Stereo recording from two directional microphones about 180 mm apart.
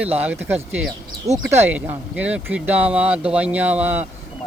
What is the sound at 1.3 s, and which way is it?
Speech, 40° right (ahead or behind).